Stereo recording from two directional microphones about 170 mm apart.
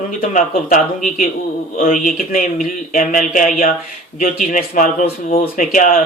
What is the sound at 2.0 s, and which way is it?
Speech, 55° left (ahead or behind).